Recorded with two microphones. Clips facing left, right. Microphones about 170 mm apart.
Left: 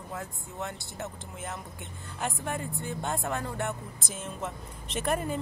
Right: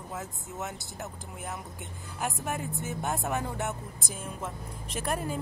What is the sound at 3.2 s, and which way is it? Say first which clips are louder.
Speech: right 1 dB; 15° right (ahead or behind).